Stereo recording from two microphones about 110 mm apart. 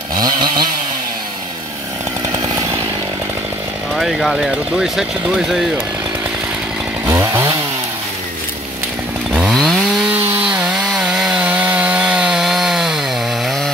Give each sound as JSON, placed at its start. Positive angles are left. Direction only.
{"t": 0.1, "sound": "chainsaw", "side_deg": -40}
{"t": 2.3, "sound": "chainsaw", "side_deg": -35}
{"t": 3.9, "sound": "speech", "side_deg": 0}
{"t": 7.1, "sound": "chainsaw", "side_deg": -25}
{"t": 9.5, "sound": "chainsaw", "side_deg": 0}
{"t": 10.1, "sound": "chainsaw", "side_deg": -15}